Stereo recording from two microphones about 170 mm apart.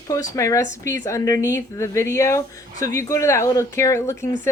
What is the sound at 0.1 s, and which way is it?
Speech, 20° left (ahead or behind).